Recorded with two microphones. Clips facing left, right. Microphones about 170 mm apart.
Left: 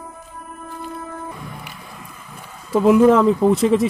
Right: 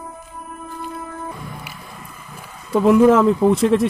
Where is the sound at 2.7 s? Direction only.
Centre (ahead or behind).